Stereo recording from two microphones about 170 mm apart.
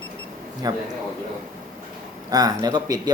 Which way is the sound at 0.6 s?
20° right (ahead or behind).